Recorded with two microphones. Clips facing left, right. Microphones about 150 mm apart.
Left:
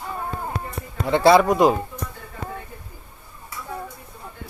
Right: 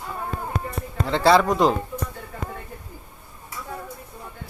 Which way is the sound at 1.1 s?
15° left (ahead or behind).